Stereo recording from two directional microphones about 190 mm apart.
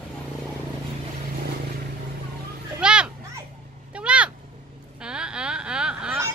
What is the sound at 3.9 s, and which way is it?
Meow, 5° right (ahead or behind).